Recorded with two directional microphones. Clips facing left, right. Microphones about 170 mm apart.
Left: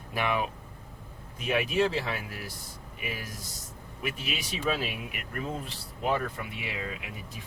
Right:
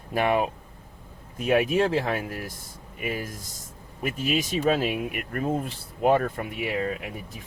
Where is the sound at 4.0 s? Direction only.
45° right (ahead or behind).